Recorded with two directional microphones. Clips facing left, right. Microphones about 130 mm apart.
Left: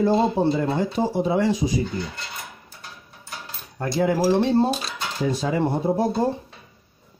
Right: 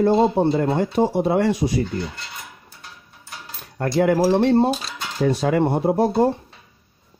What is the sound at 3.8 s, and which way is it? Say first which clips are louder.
Speech: right 3 dB; 65° right (ahead or behind).